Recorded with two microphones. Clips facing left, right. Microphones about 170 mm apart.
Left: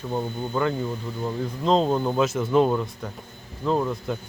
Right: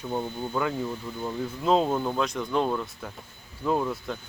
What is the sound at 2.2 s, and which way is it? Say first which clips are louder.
Speech: left 6 dB; 5° left (ahead or behind).